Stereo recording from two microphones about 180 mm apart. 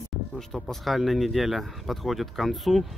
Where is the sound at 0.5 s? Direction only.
Centre (ahead or behind).